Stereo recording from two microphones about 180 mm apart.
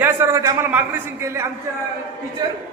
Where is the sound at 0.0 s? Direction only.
15° right (ahead or behind).